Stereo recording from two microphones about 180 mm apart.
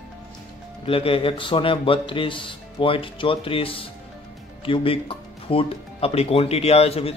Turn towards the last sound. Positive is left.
turn(degrees=35)  # may be behind; listen again after turning